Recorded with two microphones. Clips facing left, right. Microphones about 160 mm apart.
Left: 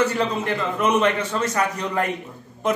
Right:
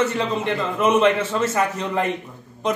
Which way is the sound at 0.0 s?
Centre (ahead or behind).